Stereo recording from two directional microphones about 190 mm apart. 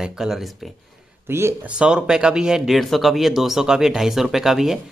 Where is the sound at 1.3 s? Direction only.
15° right (ahead or behind).